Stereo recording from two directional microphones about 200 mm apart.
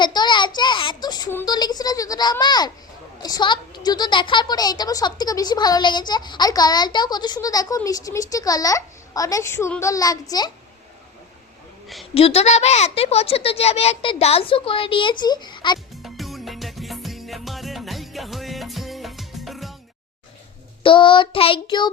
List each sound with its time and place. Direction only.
0.0 s a sound: 20° left (ahead or behind)
3.2 s a woman's voice: 20° left (ahead or behind)
12.1 s a woman's voice: 30° left (ahead or behind)
16.0 s music: centre (ahead or behind)
20.8 s a woman's voice: 25° left (ahead or behind)